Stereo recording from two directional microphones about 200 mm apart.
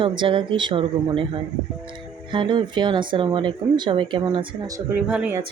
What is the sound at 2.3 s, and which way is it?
Speech, 25° right (ahead or behind).